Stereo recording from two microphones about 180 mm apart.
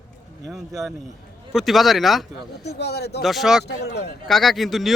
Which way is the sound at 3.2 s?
Centre (ahead or behind).